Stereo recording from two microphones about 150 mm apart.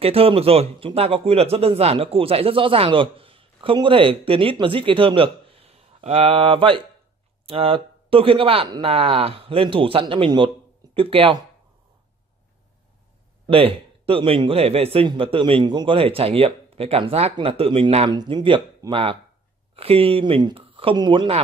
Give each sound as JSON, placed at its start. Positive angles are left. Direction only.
{"t": 0.0, "sound": "a man's voice", "side_deg": -40}
{"t": 13.5, "sound": "a man's voice", "side_deg": -40}